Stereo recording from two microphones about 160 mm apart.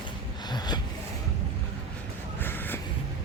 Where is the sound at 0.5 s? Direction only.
25° left (ahead or behind).